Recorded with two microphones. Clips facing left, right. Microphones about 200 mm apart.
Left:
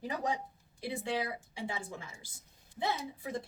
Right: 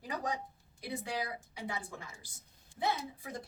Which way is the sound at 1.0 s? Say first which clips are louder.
Left 5 dB; 25° left (ahead or behind).